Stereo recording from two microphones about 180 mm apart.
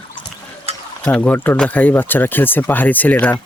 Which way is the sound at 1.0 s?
10° left (ahead or behind).